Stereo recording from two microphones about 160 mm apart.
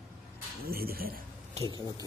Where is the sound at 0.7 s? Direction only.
70° right (ahead or behind).